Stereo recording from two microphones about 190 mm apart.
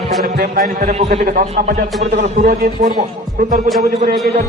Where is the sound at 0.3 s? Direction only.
45° right (ahead or behind).